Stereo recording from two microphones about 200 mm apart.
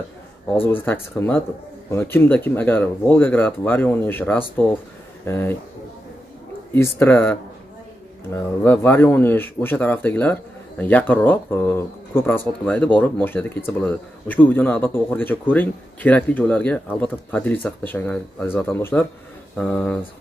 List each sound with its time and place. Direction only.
0.8 s speech: 10° left (ahead or behind)
6.7 s speech: 10° left (ahead or behind)